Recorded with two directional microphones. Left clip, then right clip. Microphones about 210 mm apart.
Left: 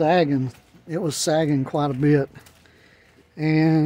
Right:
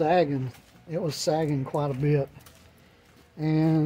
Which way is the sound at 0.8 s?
45° left (ahead or behind).